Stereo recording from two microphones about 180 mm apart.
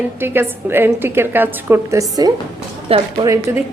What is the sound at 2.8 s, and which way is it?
Speech, 30° right (ahead or behind).